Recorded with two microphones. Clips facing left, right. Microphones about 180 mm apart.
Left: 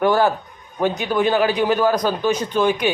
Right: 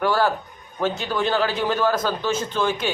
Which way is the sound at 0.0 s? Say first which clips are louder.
Left 4 dB; 15° left (ahead or behind).